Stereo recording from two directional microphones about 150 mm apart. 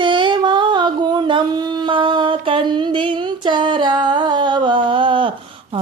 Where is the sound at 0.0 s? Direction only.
35° right (ahead or behind).